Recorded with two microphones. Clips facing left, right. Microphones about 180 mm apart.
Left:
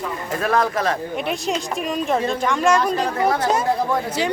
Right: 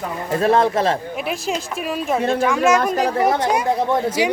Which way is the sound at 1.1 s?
5° right (ahead or behind).